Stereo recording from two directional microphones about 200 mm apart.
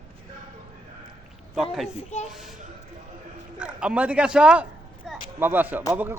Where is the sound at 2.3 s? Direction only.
Centre (ahead or behind).